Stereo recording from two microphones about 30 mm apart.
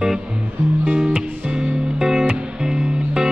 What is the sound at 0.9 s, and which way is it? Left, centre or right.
Music, right.